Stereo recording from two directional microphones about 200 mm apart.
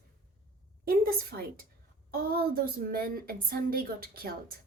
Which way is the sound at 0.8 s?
50° right (ahead or behind).